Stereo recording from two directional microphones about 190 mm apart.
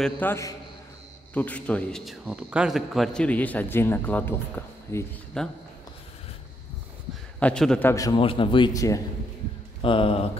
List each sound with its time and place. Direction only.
0.0 s speech: 10° left (ahead or behind)
5.4 s a man's voice: 5° left (ahead or behind)
7.3 s a man's voice: 5° left (ahead or behind)
7.9 s speech: 15° left (ahead or behind)
8.2 s speech: 30° left (ahead or behind)
9.8 s speech: 30° left (ahead or behind)